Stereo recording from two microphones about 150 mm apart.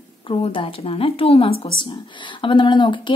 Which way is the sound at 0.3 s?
35° left (ahead or behind).